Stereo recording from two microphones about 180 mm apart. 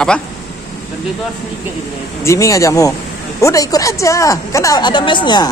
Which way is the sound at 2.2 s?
20° left (ahead or behind).